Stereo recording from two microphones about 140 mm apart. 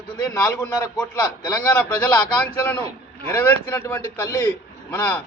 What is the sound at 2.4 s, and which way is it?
A man's voice, 10° left (ahead or behind).